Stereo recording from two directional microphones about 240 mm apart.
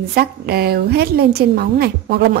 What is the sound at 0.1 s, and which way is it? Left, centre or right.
A woman's voice, right.